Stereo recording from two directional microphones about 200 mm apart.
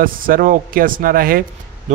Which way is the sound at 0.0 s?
45° right (ahead or behind).